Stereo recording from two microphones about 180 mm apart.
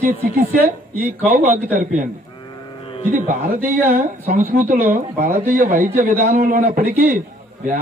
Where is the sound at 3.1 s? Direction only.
45° right (ahead or behind).